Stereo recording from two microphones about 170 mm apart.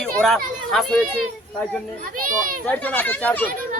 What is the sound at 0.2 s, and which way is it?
Speech, centre (ahead or behind).